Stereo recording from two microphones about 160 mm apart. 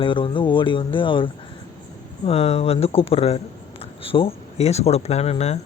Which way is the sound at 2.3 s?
40° left (ahead or behind).